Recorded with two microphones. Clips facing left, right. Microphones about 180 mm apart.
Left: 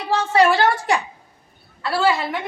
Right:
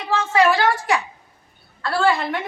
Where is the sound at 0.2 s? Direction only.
35° left (ahead or behind).